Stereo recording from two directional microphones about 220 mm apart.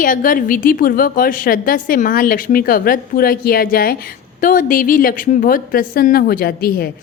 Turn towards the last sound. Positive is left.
turn(degrees=45)  # may be behind; listen again after turning